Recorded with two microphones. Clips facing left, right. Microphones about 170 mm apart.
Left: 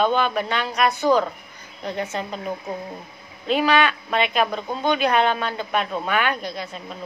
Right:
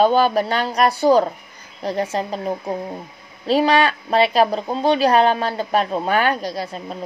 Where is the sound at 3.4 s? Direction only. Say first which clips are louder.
Right 3 dB; 35° right (ahead or behind).